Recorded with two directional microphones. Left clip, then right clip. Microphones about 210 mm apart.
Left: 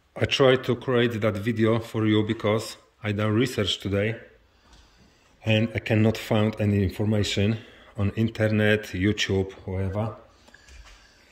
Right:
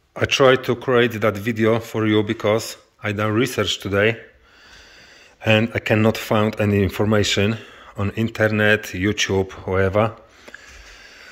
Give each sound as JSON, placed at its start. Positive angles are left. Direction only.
{"t": 0.1, "sound": "speech", "side_deg": 10}
{"t": 5.5, "sound": "speech", "side_deg": 5}
{"t": 10.0, "sound": "speech", "side_deg": -45}